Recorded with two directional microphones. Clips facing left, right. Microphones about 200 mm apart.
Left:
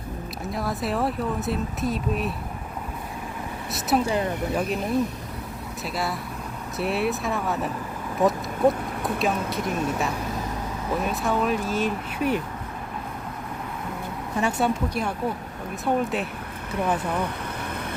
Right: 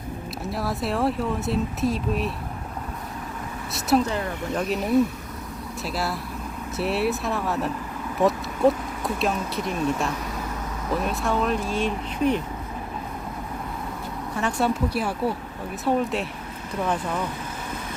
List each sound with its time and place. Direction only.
0.5 s speech: centre (ahead or behind)
3.7 s speech: centre (ahead or behind)
4.1 s speech: 20° left (ahead or behind)
4.5 s speech: centre (ahead or behind)
14.6 s speech: 5° right (ahead or behind)